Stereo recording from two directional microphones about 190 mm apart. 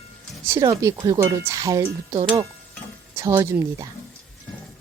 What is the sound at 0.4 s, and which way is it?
Speech, 15° right (ahead or behind).